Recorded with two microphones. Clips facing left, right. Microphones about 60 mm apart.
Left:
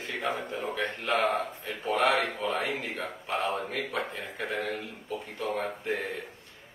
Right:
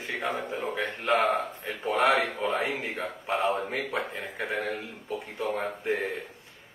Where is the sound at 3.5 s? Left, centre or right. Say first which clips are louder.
Right 2 dB; centre.